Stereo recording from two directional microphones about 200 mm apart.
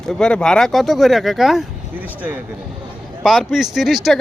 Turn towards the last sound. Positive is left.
turn(degrees=0)  # may be behind; listen again after turning